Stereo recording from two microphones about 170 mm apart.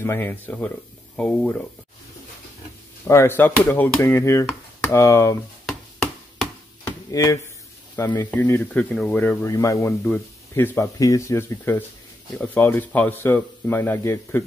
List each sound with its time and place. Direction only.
0.0 s speech: 15° left (ahead or behind)
3.1 s speech: 15° left (ahead or behind)
6.8 s chop: 20° left (ahead or behind)
7.9 s speech: 20° left (ahead or behind)